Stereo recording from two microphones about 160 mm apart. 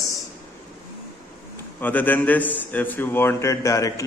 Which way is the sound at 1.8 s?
10° left (ahead or behind).